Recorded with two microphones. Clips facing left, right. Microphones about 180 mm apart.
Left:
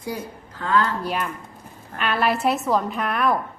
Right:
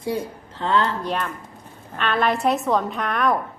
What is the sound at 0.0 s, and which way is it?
Speech, 25° right (ahead or behind).